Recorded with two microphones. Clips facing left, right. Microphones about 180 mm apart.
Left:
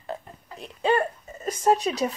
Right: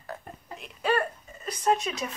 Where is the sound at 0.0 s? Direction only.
25° left (ahead or behind).